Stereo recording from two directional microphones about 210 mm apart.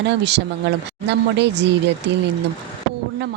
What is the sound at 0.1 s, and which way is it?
A woman's voice, 55° right (ahead or behind).